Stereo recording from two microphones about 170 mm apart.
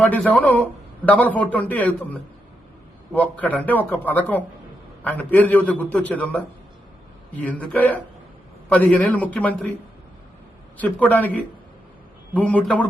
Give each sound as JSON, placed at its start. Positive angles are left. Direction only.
{"t": 0.0, "sound": "a man's voice", "side_deg": 10}
{"t": 10.8, "sound": "a man's voice", "side_deg": 10}
{"t": 12.3, "sound": "a man's voice", "side_deg": 10}